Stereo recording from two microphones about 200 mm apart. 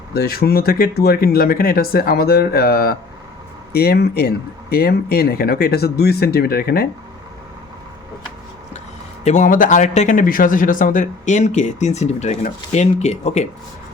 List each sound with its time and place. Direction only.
0.1 s speech: 50° left (ahead or behind)
9.2 s speech: 40° left (ahead or behind)